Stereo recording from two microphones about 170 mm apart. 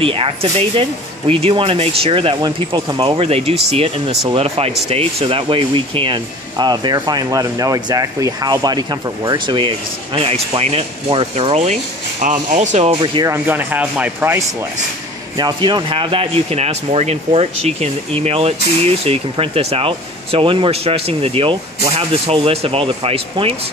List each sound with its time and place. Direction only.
0.0 s speech: 30° right (ahead or behind)
12.7 s speech: 35° right (ahead or behind)
13.3 s speech: 10° right (ahead or behind)
15.3 s speech: 25° right (ahead or behind)